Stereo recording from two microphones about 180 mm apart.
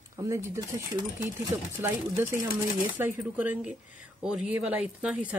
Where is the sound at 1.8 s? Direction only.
15° right (ahead or behind).